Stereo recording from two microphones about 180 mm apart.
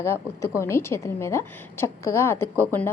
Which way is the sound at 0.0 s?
15° left (ahead or behind).